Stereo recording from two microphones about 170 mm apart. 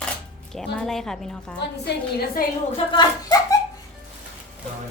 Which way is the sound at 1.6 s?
75° left (ahead or behind).